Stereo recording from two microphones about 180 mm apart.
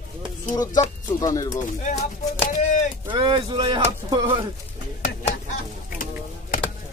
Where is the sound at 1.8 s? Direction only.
45° left (ahead or behind).